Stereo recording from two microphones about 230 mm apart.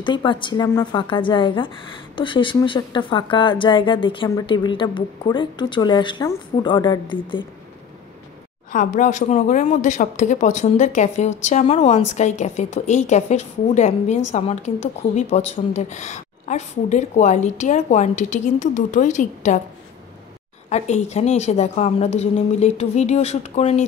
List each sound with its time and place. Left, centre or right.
0.0 s a woman's voice: left
8.7 s a woman's voice: left
20.7 s a woman's voice: left